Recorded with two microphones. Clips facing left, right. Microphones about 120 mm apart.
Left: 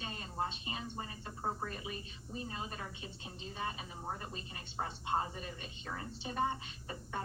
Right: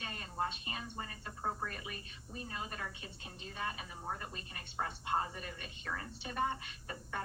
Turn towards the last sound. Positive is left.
turn(degrees=25)  # may be behind; listen again after turning